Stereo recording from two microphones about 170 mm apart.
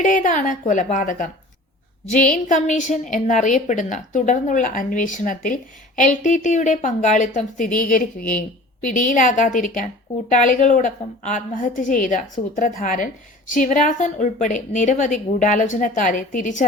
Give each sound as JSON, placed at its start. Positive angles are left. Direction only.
{"t": 0.0, "sound": "a woman's voice", "side_deg": 50}
{"t": 2.5, "sound": "a woman's voice", "side_deg": 45}